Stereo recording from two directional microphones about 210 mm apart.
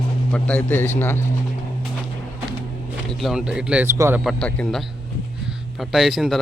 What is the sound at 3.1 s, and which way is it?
A man's voice, centre (ahead or behind).